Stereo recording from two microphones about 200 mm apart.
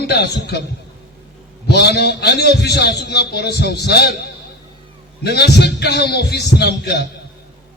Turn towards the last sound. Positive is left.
turn(degrees=55)  # may be behind; listen again after turning